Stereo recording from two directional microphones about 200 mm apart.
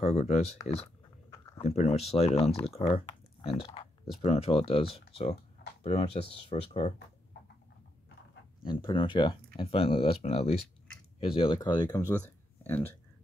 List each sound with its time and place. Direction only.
0.0 s speech: 30° left (ahead or behind)
1.6 s speech: 35° left (ahead or behind)
8.6 s speech: 25° left (ahead or behind)